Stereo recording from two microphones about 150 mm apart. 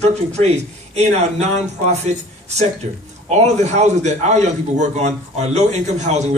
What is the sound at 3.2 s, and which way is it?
A man's voice, 45° right (ahead or behind).